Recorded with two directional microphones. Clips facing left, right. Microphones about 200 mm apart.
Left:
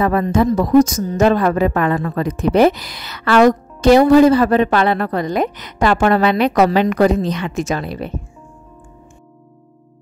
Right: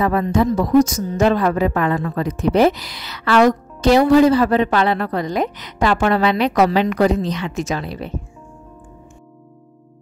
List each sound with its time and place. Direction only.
0.0 s a man's voice: 50° left (ahead or behind)